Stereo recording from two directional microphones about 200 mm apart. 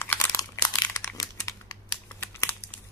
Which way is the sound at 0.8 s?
15° left (ahead or behind).